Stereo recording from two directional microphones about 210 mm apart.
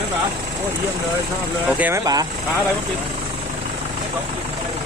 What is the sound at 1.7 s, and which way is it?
Speech, 5° right (ahead or behind).